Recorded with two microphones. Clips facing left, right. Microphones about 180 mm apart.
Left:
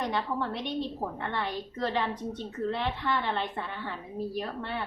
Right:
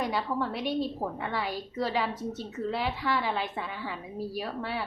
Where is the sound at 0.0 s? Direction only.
5° right (ahead or behind).